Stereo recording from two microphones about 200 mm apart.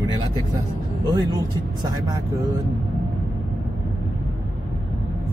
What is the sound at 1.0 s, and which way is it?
Speech, 15° right (ahead or behind).